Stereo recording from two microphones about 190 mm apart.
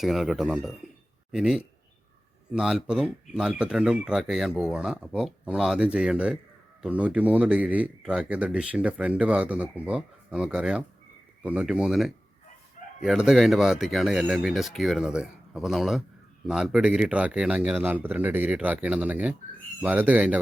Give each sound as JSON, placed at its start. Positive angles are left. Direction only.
{"t": 0.0, "sound": "speech", "side_deg": 0}